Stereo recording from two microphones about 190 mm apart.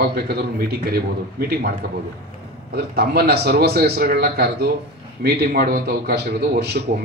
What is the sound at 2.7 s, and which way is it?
A man's voice, 55° right (ahead or behind).